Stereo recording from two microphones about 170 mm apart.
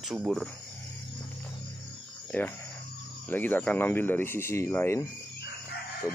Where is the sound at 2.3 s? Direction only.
10° left (ahead or behind).